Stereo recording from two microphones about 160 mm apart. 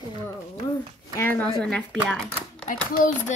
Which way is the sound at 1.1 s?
15° left (ahead or behind).